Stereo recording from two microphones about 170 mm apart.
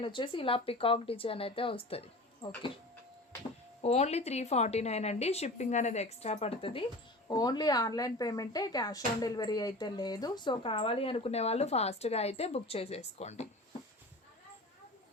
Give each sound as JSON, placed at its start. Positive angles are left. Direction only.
{"t": 0.0, "sound": "speech", "side_deg": 30}
{"t": 3.8, "sound": "speech", "side_deg": 40}